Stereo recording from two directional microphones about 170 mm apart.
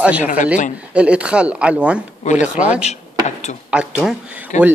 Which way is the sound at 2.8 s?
40° left (ahead or behind).